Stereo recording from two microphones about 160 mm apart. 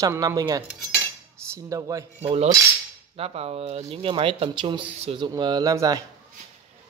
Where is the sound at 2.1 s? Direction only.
40° right (ahead or behind); by 6.0 s 20° right (ahead or behind).